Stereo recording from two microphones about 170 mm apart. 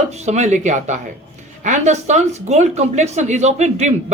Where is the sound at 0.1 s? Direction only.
40° right (ahead or behind).